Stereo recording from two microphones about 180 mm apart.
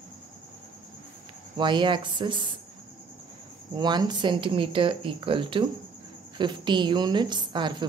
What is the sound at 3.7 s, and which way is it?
A woman's voice, 25° right (ahead or behind).